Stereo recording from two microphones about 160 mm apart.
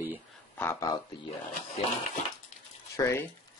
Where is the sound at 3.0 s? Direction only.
15° left (ahead or behind).